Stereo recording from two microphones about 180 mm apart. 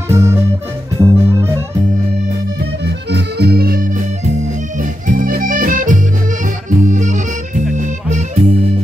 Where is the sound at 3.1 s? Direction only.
65° right (ahead or behind).